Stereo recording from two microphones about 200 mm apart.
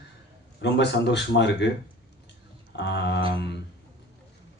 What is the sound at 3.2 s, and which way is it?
Mantra, 25° right (ahead or behind).